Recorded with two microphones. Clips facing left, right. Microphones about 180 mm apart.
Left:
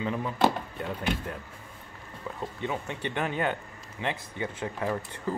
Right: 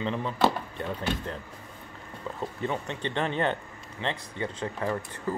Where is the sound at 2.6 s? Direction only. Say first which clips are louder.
Right 1 dB; 10° left (ahead or behind).